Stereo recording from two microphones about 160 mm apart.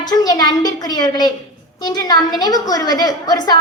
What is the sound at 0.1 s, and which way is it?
A woman's voice, 25° left (ahead or behind).